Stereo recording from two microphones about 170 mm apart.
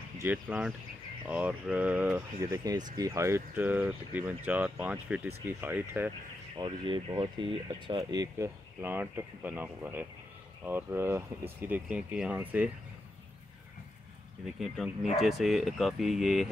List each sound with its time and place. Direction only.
0.2 s speech: 10° right (ahead or behind)
6.5 s speech: 25° right (ahead or behind); by 12.7 s 10° right (ahead or behind)
15.1 s speech: centre (ahead or behind)